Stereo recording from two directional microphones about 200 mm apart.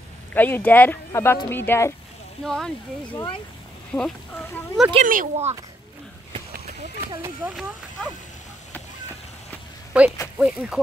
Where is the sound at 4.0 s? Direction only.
5° left (ahead or behind).